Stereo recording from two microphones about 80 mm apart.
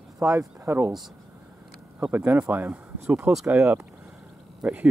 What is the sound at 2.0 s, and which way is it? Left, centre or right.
Speech, right.